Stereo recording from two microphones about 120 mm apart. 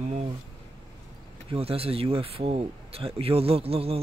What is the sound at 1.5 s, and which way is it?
A man's voice, 55° right (ahead or behind).